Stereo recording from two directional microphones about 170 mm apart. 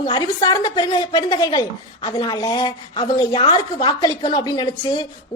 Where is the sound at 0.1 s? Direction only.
20° left (ahead or behind).